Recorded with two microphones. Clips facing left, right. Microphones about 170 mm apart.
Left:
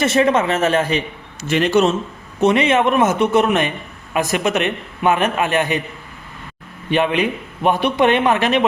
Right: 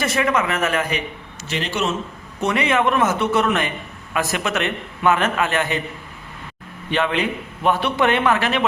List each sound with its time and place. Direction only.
0.0 s a man's voice: 25° left (ahead or behind)
1.5 s a man's voice: 55° left (ahead or behind)
2.4 s a man's voice: 20° left (ahead or behind)
6.9 s a man's voice: 15° left (ahead or behind)